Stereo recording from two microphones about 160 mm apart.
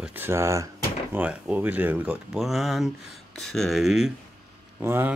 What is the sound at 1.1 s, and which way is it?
Speech, 10° right (ahead or behind).